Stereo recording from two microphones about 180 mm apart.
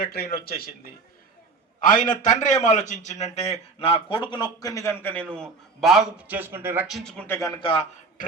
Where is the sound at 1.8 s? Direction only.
45° left (ahead or behind); by 5.2 s 10° left (ahead or behind).